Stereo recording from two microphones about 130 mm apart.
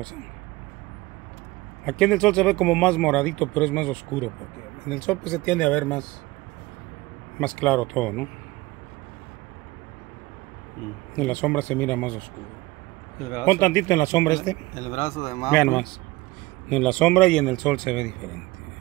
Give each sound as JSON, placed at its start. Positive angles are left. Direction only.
{"t": 1.9, "sound": "speech", "side_deg": 5}
{"t": 7.3, "sound": "speech", "side_deg": 10}
{"t": 11.1, "sound": "speech", "side_deg": 10}
{"t": 13.5, "sound": "speech", "side_deg": 15}
{"t": 14.8, "sound": "speech", "side_deg": 65}
{"t": 15.5, "sound": "speech", "side_deg": 15}